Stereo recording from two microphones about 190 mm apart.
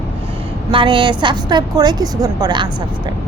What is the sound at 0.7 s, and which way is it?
Speech, 25° right (ahead or behind).